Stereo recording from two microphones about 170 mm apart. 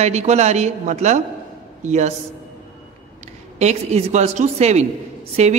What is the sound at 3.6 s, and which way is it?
A woman's voice, 40° right (ahead or behind).